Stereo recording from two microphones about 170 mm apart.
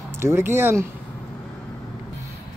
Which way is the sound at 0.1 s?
15° right (ahead or behind).